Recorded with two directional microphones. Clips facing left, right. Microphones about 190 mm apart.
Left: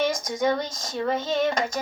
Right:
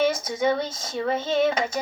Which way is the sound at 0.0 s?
5° right (ahead or behind).